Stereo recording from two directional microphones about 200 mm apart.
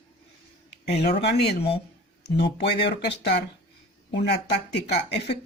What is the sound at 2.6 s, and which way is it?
Speech, 55° left (ahead or behind).